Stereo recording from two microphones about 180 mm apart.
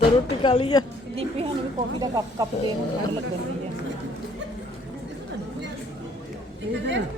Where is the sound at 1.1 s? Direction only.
30° right (ahead or behind).